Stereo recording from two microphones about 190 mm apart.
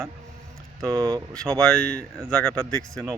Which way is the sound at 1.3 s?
5° left (ahead or behind).